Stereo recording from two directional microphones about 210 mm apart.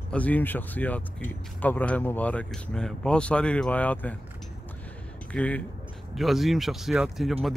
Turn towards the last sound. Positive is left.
turn(degrees=0)  # may be behind; listen again after turning